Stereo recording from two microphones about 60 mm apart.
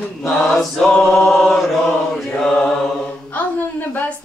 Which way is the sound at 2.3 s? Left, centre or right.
Centre.